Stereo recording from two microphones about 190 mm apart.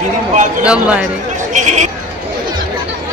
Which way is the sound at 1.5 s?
40° right (ahead or behind).